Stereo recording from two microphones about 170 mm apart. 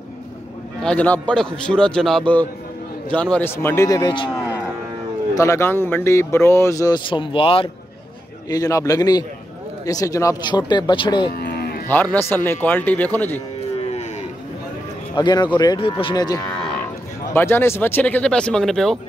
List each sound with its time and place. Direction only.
0.8 s a man's voice: 10° left (ahead or behind); by 4.3 s 25° left (ahead or behind)
5.3 s speech: 15° left (ahead or behind)
8.5 s speech: 20° left (ahead or behind)
11.3 s cattle: 70° left (ahead or behind)
11.9 s speech: 10° left (ahead or behind)
15.1 s speech: 25° left (ahead or behind); by 18.9 s centre (ahead or behind)